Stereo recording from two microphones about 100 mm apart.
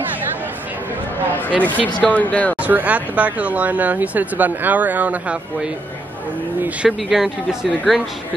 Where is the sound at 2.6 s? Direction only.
15° right (ahead or behind).